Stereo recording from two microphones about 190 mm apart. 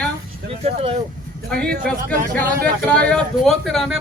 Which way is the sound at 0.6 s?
30° right (ahead or behind).